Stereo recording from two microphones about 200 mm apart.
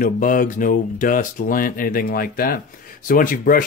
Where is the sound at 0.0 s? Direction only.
40° left (ahead or behind).